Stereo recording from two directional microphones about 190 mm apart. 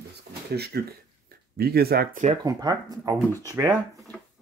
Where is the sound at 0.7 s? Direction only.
55° right (ahead or behind).